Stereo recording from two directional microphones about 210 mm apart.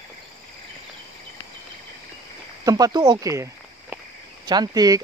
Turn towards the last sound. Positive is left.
turn(degrees=-20)  # may be behind; listen again after turning